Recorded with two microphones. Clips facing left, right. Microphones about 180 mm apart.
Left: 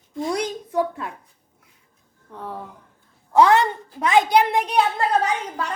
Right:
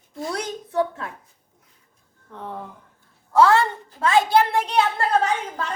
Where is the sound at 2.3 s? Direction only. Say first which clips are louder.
Even; 10° left (ahead or behind).